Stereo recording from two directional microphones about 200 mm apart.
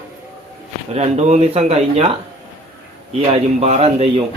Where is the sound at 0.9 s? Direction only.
35° right (ahead or behind).